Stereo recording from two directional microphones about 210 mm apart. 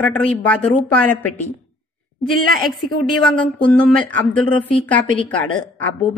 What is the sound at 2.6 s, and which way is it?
Speech, centre (ahead or behind).